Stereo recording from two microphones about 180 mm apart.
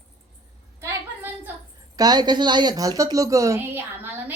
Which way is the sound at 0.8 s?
15° right (ahead or behind).